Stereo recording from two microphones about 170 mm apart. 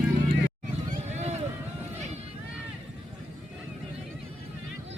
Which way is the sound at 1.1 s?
40° right (ahead or behind).